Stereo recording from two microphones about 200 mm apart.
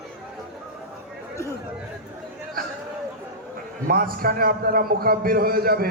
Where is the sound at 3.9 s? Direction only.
45° right (ahead or behind).